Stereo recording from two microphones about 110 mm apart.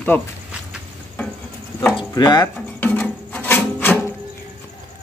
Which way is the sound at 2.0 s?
40° left (ahead or behind).